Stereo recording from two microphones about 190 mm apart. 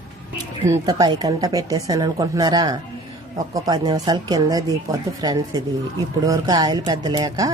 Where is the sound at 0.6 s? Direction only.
15° right (ahead or behind).